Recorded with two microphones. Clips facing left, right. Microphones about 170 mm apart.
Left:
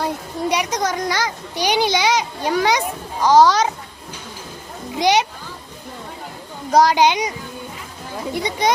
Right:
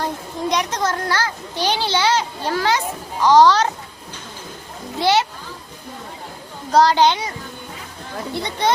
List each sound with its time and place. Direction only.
0.0 s a child's voice: 10° left (ahead or behind)
4.9 s a child's voice: 15° left (ahead or behind)
6.7 s a child's voice: 10° left (ahead or behind)